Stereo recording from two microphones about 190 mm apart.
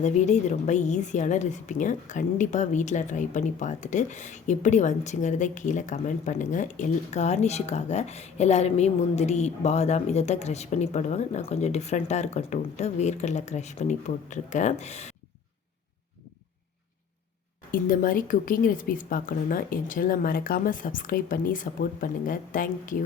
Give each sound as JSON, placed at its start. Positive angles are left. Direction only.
{"t": 0.0, "sound": "a woman's voice", "side_deg": 35}
{"t": 17.7, "sound": "speech", "side_deg": 45}